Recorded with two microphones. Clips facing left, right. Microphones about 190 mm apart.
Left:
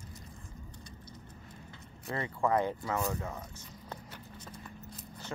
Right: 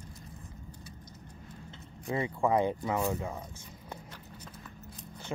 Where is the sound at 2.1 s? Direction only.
15° right (ahead or behind).